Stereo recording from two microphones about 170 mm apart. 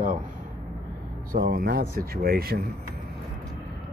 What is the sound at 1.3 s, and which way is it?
Speech, 60° right (ahead or behind).